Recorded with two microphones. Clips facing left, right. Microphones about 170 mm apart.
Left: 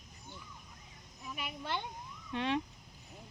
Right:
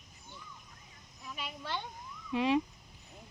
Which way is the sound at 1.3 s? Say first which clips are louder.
Left 1 dB; 15° left (ahead or behind).